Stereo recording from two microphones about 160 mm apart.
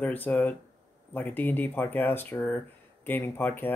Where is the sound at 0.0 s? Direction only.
10° left (ahead or behind).